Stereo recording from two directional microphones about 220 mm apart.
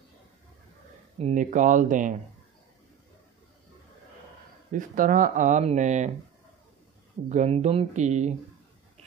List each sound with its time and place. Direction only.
1.1 s speech: 30° right (ahead or behind)
4.7 s speech: 35° right (ahead or behind)
7.2 s speech: 30° right (ahead or behind)